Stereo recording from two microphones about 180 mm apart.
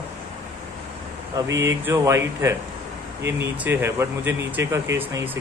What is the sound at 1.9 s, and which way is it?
Speech, 15° right (ahead or behind).